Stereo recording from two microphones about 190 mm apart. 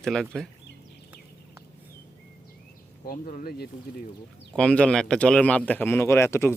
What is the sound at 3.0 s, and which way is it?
Speech, 45° left (ahead or behind).